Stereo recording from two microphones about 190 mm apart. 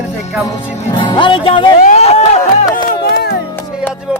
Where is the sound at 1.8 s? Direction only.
35° left (ahead or behind).